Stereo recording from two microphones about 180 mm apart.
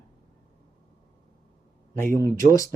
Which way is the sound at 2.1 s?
15° left (ahead or behind).